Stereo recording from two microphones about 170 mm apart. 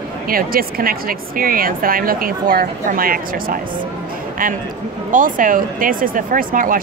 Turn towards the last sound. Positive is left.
turn(degrees=-55)  # may be behind; listen again after turning